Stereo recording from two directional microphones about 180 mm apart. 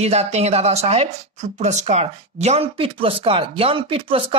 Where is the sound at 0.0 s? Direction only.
35° right (ahead or behind).